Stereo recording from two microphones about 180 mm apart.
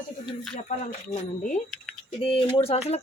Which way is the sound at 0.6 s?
40° left (ahead or behind).